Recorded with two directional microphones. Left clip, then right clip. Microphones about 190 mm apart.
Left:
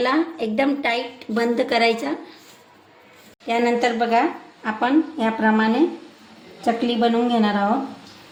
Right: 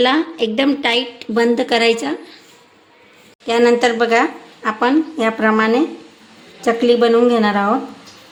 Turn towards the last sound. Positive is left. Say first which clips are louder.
# right 6 dB
turn(degrees=-40)  # may be behind; listen again after turning